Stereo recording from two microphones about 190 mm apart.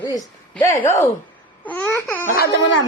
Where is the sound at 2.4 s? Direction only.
65° left (ahead or behind).